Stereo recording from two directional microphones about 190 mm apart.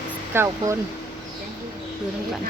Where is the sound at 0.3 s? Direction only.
15° right (ahead or behind).